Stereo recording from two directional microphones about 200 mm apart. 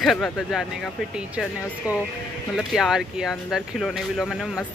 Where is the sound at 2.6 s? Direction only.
Centre (ahead or behind).